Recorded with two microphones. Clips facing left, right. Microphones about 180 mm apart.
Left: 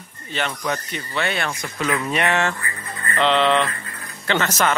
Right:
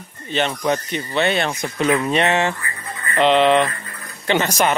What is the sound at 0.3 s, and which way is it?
Speech, 20° right (ahead or behind).